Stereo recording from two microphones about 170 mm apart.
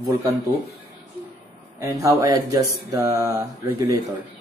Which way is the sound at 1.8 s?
20° right (ahead or behind).